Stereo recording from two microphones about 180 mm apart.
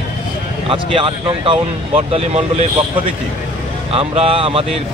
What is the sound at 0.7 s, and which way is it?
Speech, 30° right (ahead or behind).